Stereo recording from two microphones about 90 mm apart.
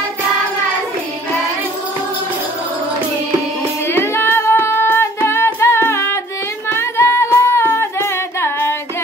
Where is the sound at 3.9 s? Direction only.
25° left (ahead or behind).